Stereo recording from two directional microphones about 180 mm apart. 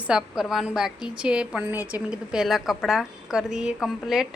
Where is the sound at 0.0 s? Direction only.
5° right (ahead or behind).